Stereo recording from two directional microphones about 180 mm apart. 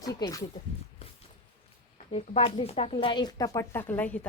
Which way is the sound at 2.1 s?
35° left (ahead or behind).